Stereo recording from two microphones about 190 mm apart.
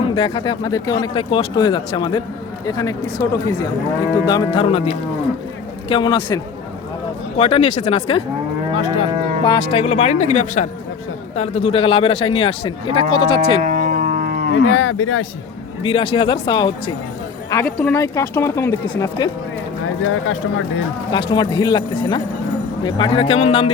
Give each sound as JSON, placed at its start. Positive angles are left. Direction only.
{"t": 0.1, "sound": "a man's voice", "side_deg": 25}
{"t": 9.4, "sound": "a man's voice", "side_deg": 25}
{"t": 13.6, "sound": "livestock", "side_deg": -45}
{"t": 14.5, "sound": "speech", "side_deg": 85}
{"t": 15.8, "sound": "a man's voice", "side_deg": 30}
{"t": 17.5, "sound": "speech", "side_deg": 15}
{"t": 20.0, "sound": "speech", "side_deg": 90}
{"t": 21.1, "sound": "a man's voice", "side_deg": 25}